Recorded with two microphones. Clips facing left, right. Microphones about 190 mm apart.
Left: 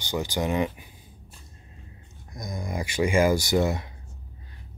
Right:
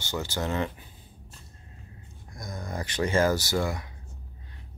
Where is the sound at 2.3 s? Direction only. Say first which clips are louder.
Left 3 dB; 15° left (ahead or behind).